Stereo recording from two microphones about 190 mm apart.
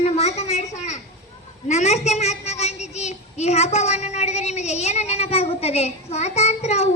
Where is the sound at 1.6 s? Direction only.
35° left (ahead or behind).